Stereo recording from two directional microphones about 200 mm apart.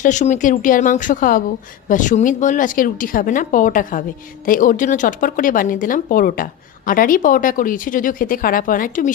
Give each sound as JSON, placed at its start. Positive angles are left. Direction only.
{"t": 0.0, "sound": "speech", "side_deg": 35}